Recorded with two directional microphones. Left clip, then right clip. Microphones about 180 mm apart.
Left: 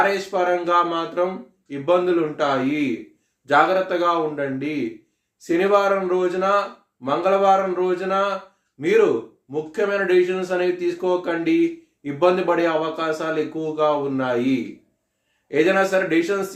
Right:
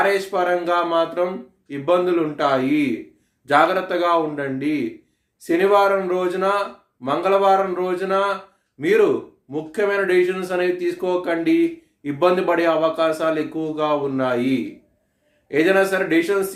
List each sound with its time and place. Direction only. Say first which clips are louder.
0.0 s speech: right 1 dB; 25° right (ahead or behind)